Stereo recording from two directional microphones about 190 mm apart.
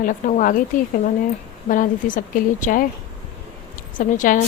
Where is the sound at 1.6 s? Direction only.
45° left (ahead or behind).